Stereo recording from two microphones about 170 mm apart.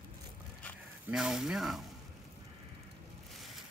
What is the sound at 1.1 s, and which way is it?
Speech, 5° right (ahead or behind).